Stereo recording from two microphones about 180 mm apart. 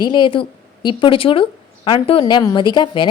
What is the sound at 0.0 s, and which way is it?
A woman's voice, 25° left (ahead or behind).